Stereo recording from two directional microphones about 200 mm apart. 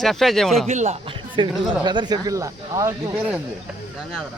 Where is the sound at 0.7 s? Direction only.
35° right (ahead or behind); by 3.4 s 5° right (ahead or behind).